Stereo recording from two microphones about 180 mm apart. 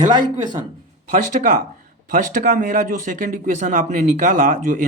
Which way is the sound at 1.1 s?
45° right (ahead or behind).